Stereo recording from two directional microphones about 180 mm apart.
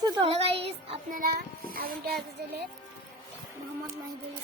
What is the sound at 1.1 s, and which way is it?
Child singing, 55° right (ahead or behind).